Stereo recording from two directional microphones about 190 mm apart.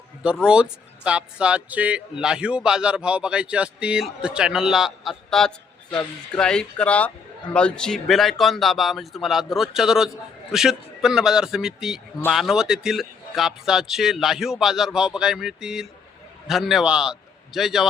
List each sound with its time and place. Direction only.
0.4 s a man's voice: 5° right (ahead or behind)